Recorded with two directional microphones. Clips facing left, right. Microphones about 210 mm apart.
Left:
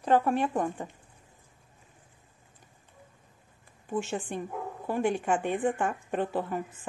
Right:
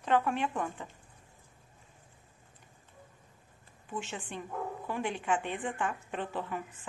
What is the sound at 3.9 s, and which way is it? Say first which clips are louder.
Speech: left 8 dB; 40° left (ahead or behind).